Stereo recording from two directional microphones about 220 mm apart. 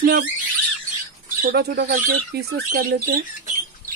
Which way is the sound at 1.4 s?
45° right (ahead or behind).